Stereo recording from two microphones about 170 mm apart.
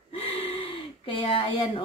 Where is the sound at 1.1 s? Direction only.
30° left (ahead or behind).